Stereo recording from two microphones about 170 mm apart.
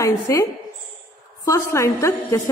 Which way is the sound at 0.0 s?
15° left (ahead or behind).